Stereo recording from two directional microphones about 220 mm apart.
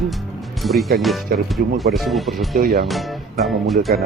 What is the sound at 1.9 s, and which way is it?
Speech, centre (ahead or behind).